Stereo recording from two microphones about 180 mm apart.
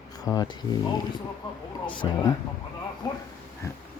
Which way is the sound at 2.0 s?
25° left (ahead or behind).